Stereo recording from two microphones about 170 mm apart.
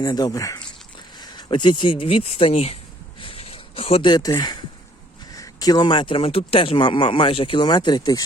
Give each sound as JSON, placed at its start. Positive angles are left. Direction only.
{"t": 0.0, "sound": "speech", "side_deg": 25}
{"t": 3.2, "sound": "a sound", "side_deg": 35}
{"t": 5.3, "sound": "speech", "side_deg": 20}